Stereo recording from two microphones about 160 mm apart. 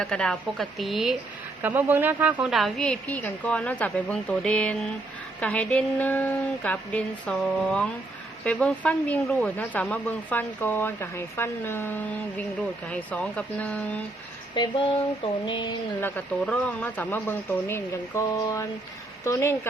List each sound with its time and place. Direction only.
0.0 s a woman's voice: 5° left (ahead or behind)
1.6 s a woman's voice: 10° right (ahead or behind); by 14.0 s 5° left (ahead or behind)
15.2 s music: 30° left (ahead or behind)
16.0 s speech: 10° left (ahead or behind)
18.3 s a sound: 20° left (ahead or behind)
19.2 s speech: 15° left (ahead or behind)